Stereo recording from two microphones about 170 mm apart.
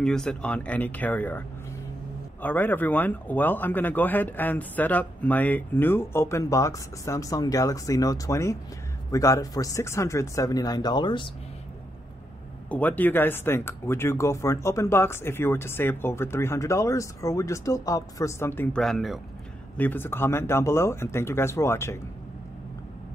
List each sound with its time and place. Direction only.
0.0 s a man's voice: 5° left (ahead or behind)
2.4 s a man's voice: 10° left (ahead or behind); by 11.2 s 25° left (ahead or behind)
12.6 s a man's voice: 10° left (ahead or behind)
18.8 s speech: centre (ahead or behind)
19.8 s a man's voice: 10° left (ahead or behind)